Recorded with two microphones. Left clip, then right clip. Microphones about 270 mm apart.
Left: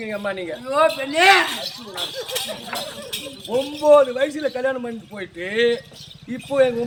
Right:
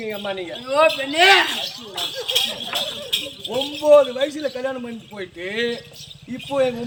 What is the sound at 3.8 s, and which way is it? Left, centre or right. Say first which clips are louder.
A man's voice: even; centre.